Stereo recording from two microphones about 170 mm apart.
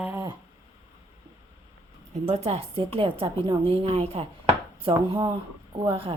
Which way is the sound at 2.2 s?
35° right (ahead or behind).